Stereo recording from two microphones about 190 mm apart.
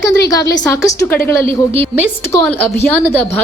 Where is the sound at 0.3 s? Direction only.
20° left (ahead or behind).